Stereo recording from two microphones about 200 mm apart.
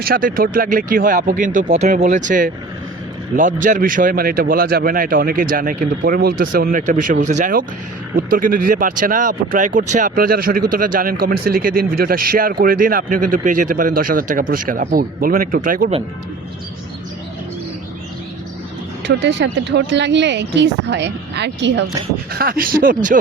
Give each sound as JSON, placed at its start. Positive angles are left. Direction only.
{"t": 0.0, "sound": "speech", "side_deg": -45}
{"t": 19.0, "sound": "speech", "side_deg": -60}
{"t": 22.3, "sound": "speech", "side_deg": -50}